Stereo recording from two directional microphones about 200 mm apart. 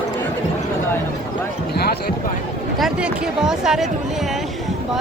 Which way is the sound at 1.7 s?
55° left (ahead or behind).